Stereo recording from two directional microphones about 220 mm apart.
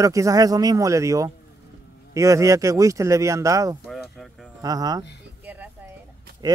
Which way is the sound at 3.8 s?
Centre (ahead or behind).